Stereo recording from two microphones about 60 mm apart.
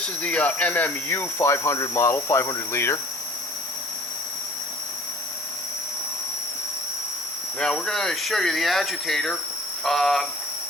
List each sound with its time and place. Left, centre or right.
0.0 s cricket: left
2.1 s cricket: left
7.6 s speech: centre